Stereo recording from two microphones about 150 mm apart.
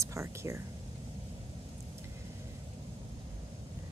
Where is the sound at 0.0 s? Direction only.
20° right (ahead or behind).